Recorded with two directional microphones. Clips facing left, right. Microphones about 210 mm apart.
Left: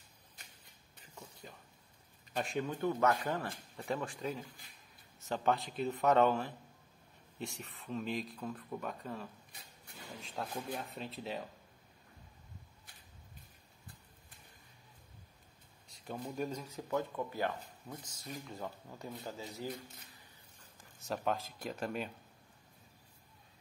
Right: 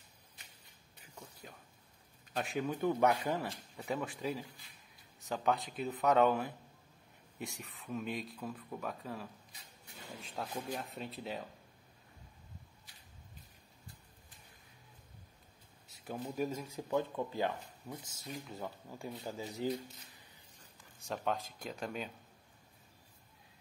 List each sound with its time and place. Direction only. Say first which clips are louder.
2.3 s a man's voice: left 1 dB; centre (ahead or behind)
2.8 s speech: right 1 dB; 15° right (ahead or behind)
15.9 s speech: right 1 dB; 5° right (ahead or behind)
18.2 s speech: even; 5° right (ahead or behind)
21.0 s speech: left 1 dB; centre (ahead or behind)